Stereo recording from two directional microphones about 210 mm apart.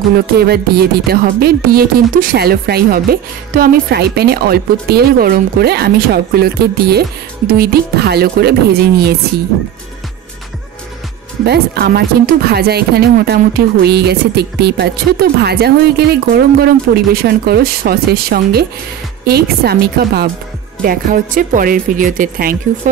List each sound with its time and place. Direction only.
0.1 s speech: 50° right (ahead or behind)
11.4 s speech: 50° right (ahead or behind)